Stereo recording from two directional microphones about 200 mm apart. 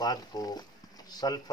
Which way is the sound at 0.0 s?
20° left (ahead or behind).